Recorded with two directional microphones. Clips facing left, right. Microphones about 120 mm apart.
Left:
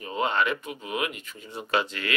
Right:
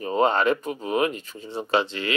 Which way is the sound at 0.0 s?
35° right (ahead or behind).